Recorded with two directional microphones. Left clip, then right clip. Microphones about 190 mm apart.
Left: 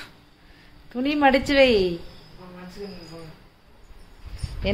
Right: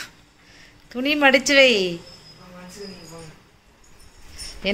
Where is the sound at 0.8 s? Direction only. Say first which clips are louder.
Right 2 dB; 5° right (ahead or behind).